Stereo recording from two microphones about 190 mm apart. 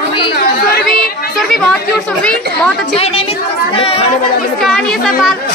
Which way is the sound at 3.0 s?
30° left (ahead or behind).